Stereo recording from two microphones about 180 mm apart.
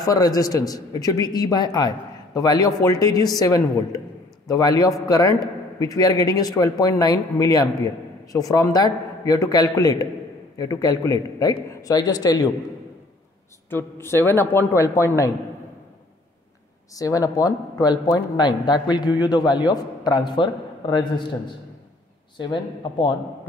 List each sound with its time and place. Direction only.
0.0 s a man's voice: 20° left (ahead or behind)
13.7 s a man's voice: 10° left (ahead or behind)
16.9 s a man's voice: 20° left (ahead or behind)
22.4 s a man's voice: 25° left (ahead or behind)